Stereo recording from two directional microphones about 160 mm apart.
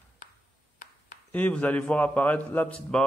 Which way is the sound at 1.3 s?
10° left (ahead or behind).